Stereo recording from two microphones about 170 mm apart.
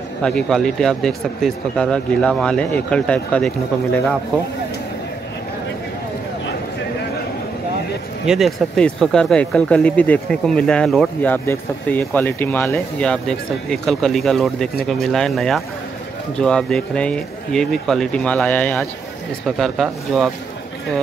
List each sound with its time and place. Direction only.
0.2 s speech: 5° left (ahead or behind)
8.3 s speech: centre (ahead or behind)